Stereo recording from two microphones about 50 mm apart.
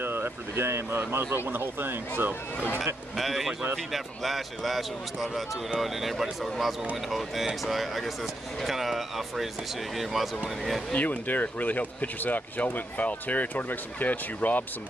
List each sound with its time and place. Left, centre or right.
0.0 s speech: right
3.2 s speech: centre
10.9 s speech: left